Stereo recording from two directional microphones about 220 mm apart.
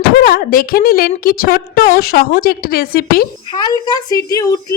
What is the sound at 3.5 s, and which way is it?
Speech, 20° left (ahead or behind).